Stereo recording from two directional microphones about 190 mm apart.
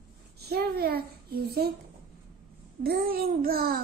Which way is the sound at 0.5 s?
55° right (ahead or behind).